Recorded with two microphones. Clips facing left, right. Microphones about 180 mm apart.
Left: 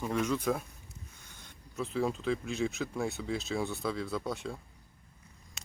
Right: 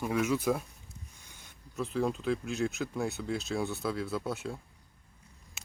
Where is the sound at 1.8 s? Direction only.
Centre (ahead or behind).